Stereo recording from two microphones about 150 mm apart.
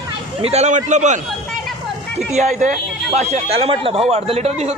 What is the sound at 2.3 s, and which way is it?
Speech, 55° right (ahead or behind).